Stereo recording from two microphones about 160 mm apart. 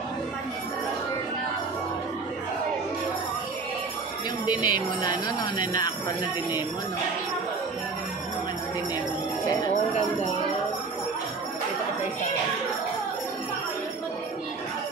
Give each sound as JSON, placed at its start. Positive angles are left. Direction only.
{"t": 4.6, "sound": "speech", "side_deg": 25}